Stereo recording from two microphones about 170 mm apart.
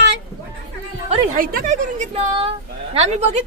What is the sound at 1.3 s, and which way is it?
A woman's voice, 50° right (ahead or behind).